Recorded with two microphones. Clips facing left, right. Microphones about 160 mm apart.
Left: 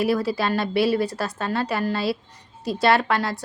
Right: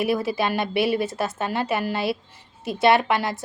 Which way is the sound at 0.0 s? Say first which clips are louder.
Left 1 dB; 20° right (ahead or behind).